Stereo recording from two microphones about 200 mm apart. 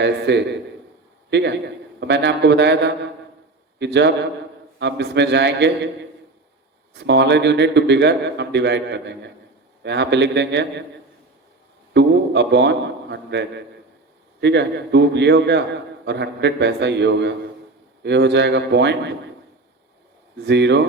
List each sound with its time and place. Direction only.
0.0 s a man's voice: 60° right (ahead or behind)
6.9 s a man's voice: 60° right (ahead or behind)
11.9 s a man's voice: 60° right (ahead or behind)
14.4 s a man's voice: 60° right (ahead or behind)
20.4 s a man's voice: 60° right (ahead or behind)